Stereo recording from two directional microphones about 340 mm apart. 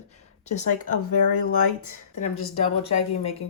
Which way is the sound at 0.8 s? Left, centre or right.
Left.